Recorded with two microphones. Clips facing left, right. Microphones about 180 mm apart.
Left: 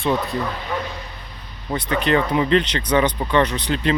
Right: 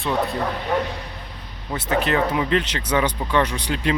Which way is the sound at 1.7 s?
5° right (ahead or behind).